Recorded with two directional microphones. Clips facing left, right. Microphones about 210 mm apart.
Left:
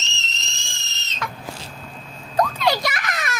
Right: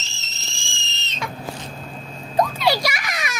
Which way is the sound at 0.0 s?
5° right (ahead or behind).